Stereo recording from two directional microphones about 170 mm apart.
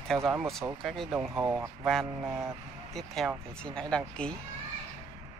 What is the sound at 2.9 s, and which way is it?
Speech, centre (ahead or behind).